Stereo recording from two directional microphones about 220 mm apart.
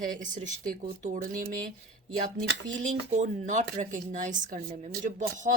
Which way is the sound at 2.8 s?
35° right (ahead or behind).